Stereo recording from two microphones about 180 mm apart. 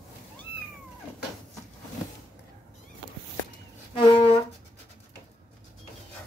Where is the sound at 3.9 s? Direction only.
30° left (ahead or behind).